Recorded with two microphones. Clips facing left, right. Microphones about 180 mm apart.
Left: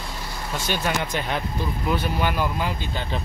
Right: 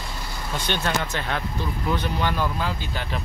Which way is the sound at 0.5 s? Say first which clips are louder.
Even; 5° left (ahead or behind).